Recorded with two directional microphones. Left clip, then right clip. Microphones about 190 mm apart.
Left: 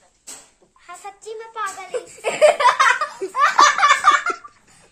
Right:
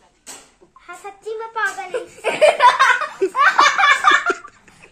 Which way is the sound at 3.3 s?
30° left (ahead or behind).